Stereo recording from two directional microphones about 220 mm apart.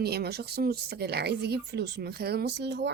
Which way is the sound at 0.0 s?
45° right (ahead or behind).